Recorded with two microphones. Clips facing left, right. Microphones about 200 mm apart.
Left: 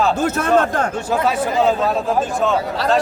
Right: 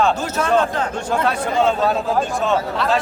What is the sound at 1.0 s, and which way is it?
A man's voice, 5° left (ahead or behind).